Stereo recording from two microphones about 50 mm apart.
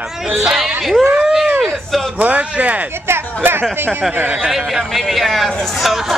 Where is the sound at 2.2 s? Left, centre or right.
Right.